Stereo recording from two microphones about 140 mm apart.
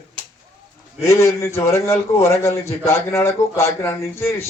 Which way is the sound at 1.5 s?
20° left (ahead or behind).